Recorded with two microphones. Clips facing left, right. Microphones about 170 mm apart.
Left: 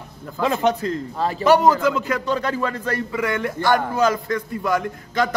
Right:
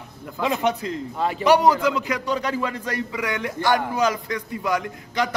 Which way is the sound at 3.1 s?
50° left (ahead or behind).